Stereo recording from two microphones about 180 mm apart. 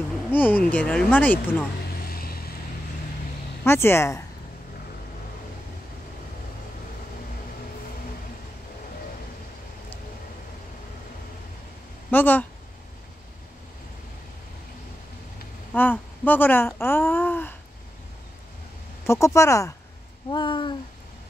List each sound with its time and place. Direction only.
0.3 s speech: 10° left (ahead or behind)
1.9 s vehicle: 55° left (ahead or behind)
3.6 s speech: 15° left (ahead or behind)
12.1 s speech: 10° left (ahead or behind)
15.7 s speech: 10° left (ahead or behind)
19.0 s speech: 15° left (ahead or behind)